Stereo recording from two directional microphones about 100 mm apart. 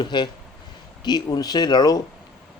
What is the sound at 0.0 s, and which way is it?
A man's voice, 50° left (ahead or behind).